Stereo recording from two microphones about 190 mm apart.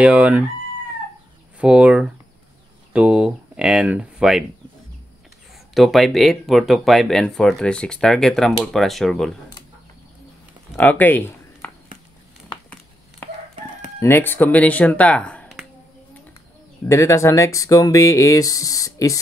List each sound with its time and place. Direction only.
0.0 s speech: 5° right (ahead or behind)
1.6 s speech: 5° right (ahead or behind)
5.8 s speech: centre (ahead or behind)
10.8 s a sound: 10° left (ahead or behind)
13.2 s chicken: 10° left (ahead or behind)
13.9 s speech: 10° left (ahead or behind)
16.8 s speech: 15° left (ahead or behind)